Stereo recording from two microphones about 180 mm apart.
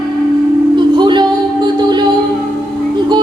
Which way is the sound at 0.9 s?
25° right (ahead or behind).